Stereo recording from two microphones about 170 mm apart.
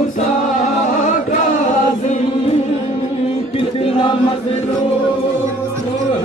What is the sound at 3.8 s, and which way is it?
Chant, 35° left (ahead or behind).